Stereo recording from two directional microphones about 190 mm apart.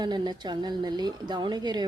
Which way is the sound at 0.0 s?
25° right (ahead or behind).